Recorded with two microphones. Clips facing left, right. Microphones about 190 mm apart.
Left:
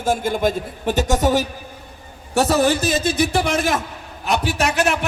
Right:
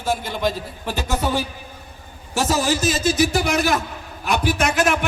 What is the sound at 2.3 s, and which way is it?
Speech, 60° left (ahead or behind).